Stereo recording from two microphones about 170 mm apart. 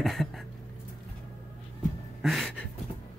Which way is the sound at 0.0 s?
Centre (ahead or behind).